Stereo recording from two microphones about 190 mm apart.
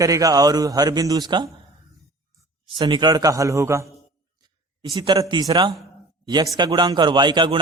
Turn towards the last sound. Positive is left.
turn(degrees=-25)  # may be behind; listen again after turning